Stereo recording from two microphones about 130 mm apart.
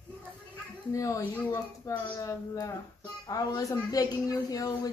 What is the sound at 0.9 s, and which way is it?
A woman's voice, 25° left (ahead or behind).